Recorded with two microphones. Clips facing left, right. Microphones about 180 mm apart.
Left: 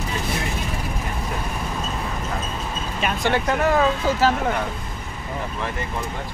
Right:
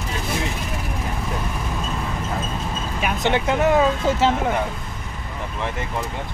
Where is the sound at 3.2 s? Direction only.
20° right (ahead or behind).